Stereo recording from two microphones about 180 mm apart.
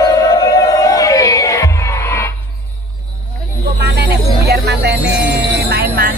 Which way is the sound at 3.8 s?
65° right (ahead or behind).